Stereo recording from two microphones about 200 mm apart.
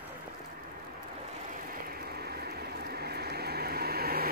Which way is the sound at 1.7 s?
50° right (ahead or behind).